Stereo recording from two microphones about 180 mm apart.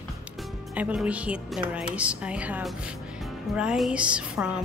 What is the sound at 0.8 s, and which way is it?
Speech, 5° right (ahead or behind).